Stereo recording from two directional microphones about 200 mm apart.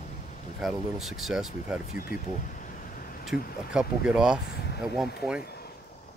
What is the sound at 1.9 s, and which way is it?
Speech, 45° left (ahead or behind).